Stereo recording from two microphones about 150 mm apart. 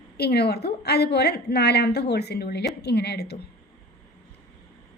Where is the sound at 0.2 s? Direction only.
90° left.